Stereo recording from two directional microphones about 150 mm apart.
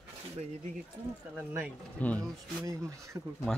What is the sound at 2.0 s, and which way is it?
Speech, 10° left (ahead or behind).